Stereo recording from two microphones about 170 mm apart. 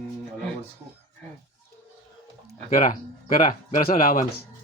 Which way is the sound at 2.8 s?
50° left (ahead or behind).